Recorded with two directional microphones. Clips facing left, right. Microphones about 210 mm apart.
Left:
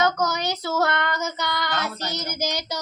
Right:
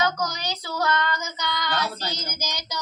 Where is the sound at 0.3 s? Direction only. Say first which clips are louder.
Left 5 dB; 50° left (ahead or behind).